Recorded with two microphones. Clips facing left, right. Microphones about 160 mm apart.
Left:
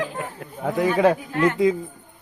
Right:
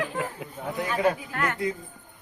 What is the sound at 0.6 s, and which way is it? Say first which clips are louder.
Speech: left 7 dB; 90° left.